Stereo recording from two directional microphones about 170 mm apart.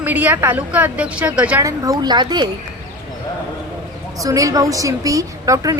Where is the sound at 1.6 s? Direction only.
20° right (ahead or behind).